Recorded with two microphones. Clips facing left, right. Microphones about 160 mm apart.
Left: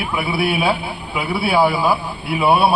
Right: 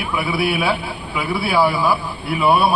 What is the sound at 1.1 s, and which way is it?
A man's voice, 15° left (ahead or behind).